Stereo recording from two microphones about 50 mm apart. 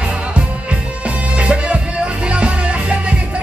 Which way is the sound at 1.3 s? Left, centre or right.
Right.